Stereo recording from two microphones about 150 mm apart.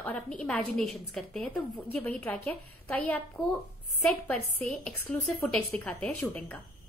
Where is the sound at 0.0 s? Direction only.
5° left (ahead or behind).